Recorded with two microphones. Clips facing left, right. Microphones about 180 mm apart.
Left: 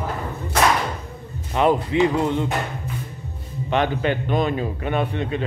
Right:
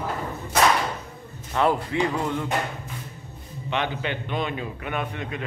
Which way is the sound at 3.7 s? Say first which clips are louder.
Left 6 dB; 45° left (ahead or behind).